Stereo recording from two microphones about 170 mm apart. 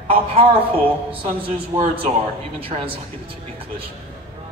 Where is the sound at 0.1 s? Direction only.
35° right (ahead or behind).